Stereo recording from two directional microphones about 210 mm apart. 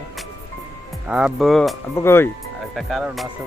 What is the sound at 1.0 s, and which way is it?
Speech, 5° right (ahead or behind).